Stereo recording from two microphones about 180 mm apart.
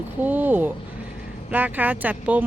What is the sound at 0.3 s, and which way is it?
Speech, 10° right (ahead or behind).